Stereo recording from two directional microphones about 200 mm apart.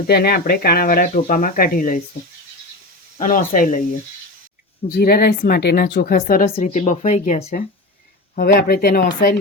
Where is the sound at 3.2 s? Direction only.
45° left (ahead or behind).